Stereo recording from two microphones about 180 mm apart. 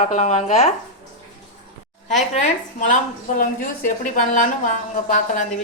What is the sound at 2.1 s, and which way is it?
Speech, 40° left (ahead or behind).